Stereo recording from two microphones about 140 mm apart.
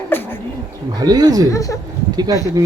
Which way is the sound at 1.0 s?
30° right (ahead or behind).